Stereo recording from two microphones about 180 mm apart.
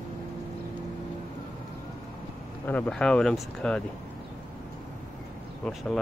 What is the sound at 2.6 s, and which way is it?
Speech, 5° left (ahead or behind).